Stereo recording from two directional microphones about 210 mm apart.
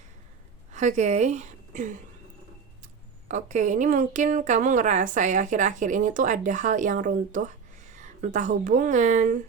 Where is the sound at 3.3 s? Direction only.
35° right (ahead or behind).